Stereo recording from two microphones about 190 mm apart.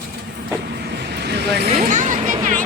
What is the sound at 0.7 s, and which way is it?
Vehicle, 60° right (ahead or behind).